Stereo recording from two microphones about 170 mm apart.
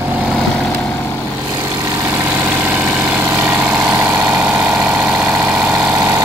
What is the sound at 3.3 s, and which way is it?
Vehicle, 5° right (ahead or behind).